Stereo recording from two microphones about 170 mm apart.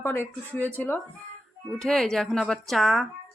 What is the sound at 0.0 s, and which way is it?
Speech, 15° left (ahead or behind).